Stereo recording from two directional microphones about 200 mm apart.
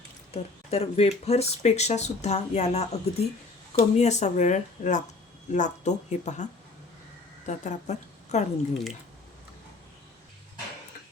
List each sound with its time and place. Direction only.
0.3 s a woman's voice: 30° left (ahead or behind)